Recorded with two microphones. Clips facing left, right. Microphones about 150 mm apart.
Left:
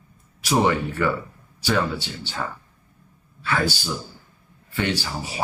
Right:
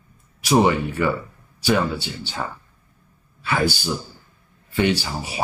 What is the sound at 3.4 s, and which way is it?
Speech, 15° right (ahead or behind).